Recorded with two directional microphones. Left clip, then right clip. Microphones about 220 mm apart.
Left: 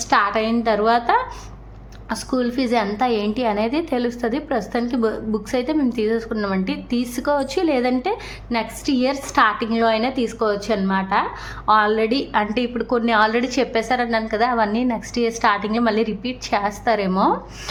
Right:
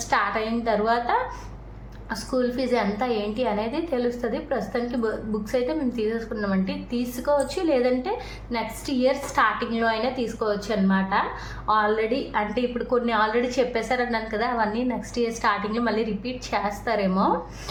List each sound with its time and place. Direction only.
0.1 s a woman's voice: 40° left (ahead or behind)